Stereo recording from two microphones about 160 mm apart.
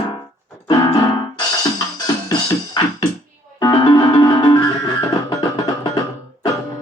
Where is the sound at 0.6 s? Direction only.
30° left (ahead or behind).